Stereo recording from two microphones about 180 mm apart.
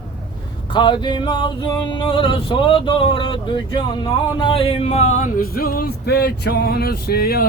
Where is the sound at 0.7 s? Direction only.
25° left (ahead or behind).